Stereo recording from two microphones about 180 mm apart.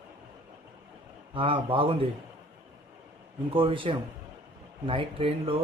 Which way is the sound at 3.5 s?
30° right (ahead or behind).